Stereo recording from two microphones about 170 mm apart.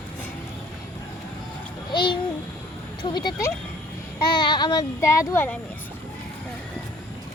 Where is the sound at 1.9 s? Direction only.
25° left (ahead or behind).